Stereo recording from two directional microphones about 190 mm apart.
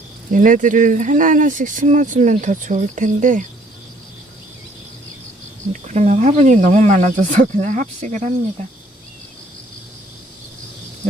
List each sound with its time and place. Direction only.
0.3 s speech: 45° right (ahead or behind)
5.9 s speech: 40° right (ahead or behind)